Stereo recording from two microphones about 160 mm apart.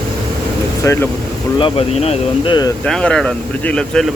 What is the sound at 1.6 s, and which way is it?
Speech, 35° left (ahead or behind).